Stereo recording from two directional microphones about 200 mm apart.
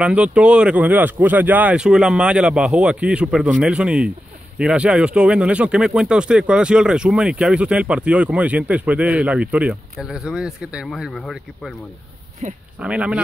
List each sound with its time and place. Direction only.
0.0 s speech: 5° right (ahead or behind)
12.4 s speech: 35° right (ahead or behind)
12.7 s speech: 5° right (ahead or behind)